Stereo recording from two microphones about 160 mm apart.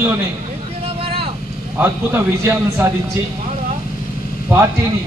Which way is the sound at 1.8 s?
15° right (ahead or behind).